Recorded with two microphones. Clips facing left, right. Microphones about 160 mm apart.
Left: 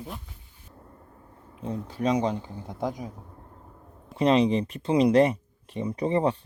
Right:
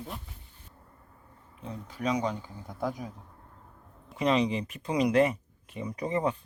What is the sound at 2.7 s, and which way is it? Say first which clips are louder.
Speech: left 2 dB; 15° left (ahead or behind).